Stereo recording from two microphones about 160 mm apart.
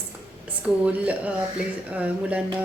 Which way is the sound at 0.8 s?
10° right (ahead or behind).